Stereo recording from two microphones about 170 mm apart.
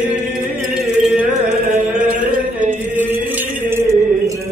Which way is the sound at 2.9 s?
10° right (ahead or behind).